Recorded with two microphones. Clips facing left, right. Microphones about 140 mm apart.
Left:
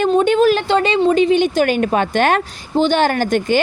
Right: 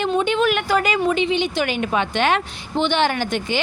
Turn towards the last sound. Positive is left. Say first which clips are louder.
# left 6 dB
turn(degrees=45)  # may be behind; listen again after turning